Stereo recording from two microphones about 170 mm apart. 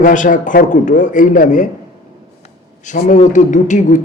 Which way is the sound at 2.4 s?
45° left (ahead or behind).